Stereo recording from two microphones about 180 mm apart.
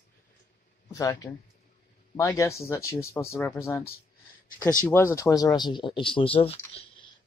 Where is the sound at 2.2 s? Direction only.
15° left (ahead or behind).